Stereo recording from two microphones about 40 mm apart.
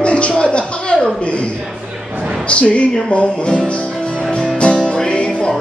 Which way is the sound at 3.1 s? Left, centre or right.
Left.